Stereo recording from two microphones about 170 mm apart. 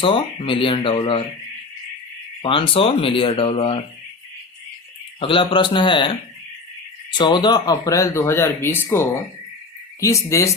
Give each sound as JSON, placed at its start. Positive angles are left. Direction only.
{"t": 0.0, "sound": "speech", "side_deg": 30}
{"t": 2.4, "sound": "speech", "side_deg": 30}
{"t": 5.2, "sound": "a man's voice", "side_deg": 30}
{"t": 7.1, "sound": "speech", "side_deg": 25}